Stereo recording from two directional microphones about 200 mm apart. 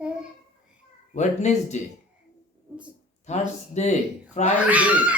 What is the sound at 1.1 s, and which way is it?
Speech, 35° left (ahead or behind).